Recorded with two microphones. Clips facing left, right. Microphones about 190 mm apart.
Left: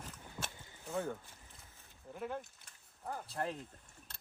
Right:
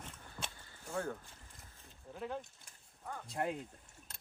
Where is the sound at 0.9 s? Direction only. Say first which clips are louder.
Left 1 dB; 5° left (ahead or behind).